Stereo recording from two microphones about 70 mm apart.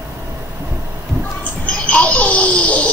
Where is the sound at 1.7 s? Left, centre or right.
Centre.